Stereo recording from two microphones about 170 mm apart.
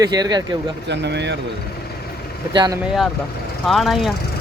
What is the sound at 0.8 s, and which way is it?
Speech, 90° right.